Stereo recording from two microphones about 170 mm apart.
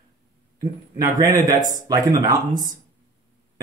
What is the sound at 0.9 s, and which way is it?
Speech, 20° right (ahead or behind).